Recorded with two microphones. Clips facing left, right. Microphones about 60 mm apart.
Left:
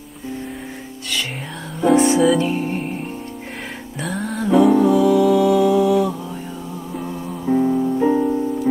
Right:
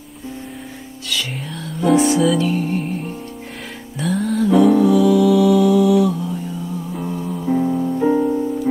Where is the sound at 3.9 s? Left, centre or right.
Centre.